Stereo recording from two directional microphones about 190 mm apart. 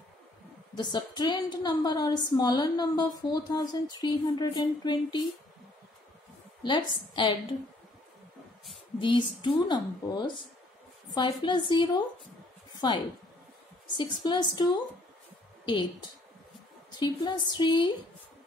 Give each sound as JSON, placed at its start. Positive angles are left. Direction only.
{"t": 0.7, "sound": "a woman's voice", "side_deg": 25}
{"t": 6.6, "sound": "a woman's voice", "side_deg": 25}
{"t": 9.0, "sound": "a woman's voice", "side_deg": 25}
{"t": 13.9, "sound": "a woman's voice", "side_deg": 25}